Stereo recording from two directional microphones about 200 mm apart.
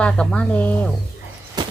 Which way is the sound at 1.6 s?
20° right (ahead or behind).